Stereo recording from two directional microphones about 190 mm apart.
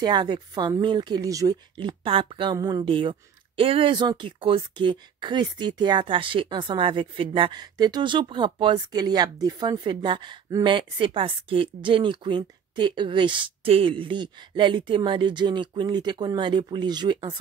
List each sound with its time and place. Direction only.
0.0 s speech: 25° right (ahead or behind)